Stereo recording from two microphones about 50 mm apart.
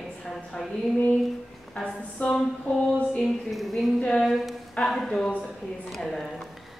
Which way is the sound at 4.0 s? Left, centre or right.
Centre.